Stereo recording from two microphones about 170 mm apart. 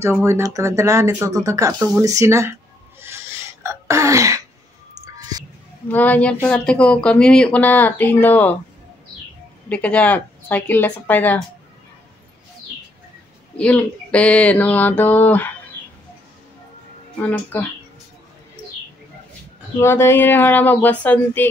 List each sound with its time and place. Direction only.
0.0 s speech: 15° right (ahead or behind)
3.0 s sneeze: 15° right (ahead or behind)
5.0 s music: 20° right (ahead or behind)
5.9 s speech: 10° left (ahead or behind)
9.7 s speech: 5° left (ahead or behind)
13.6 s speech: 5° left (ahead or behind)
17.2 s speech: 10° left (ahead or behind)
19.8 s speech: 15° left (ahead or behind)